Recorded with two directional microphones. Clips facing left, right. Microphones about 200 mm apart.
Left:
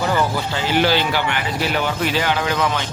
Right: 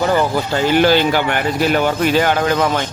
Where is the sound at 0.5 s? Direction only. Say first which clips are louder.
Right 6 dB; 50° right (ahead or behind).